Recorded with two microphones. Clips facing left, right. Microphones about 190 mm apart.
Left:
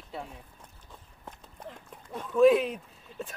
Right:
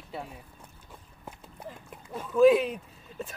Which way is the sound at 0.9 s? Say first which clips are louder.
Right 1 dB; 10° right (ahead or behind).